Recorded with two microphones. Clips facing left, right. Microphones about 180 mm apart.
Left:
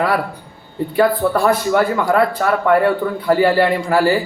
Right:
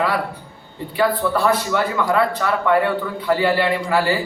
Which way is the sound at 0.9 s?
45° left (ahead or behind).